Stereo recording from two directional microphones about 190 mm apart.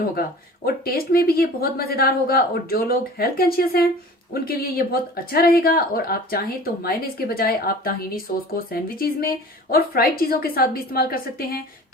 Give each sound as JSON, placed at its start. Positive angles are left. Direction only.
{"t": 0.0, "sound": "a woman's voice", "side_deg": 55}